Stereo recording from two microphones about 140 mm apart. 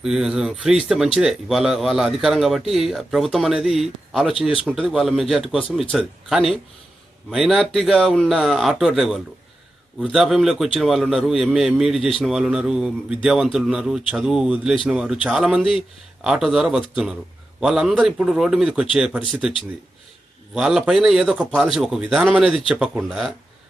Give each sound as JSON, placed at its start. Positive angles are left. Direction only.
{"t": 0.0, "sound": "speech", "side_deg": -5}
{"t": 20.6, "sound": "speech", "side_deg": -5}